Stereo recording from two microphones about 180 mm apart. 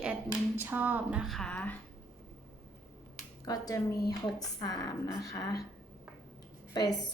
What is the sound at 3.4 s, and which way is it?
A woman's voice, 20° left (ahead or behind).